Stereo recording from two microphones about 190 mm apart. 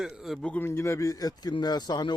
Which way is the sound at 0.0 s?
Centre (ahead or behind).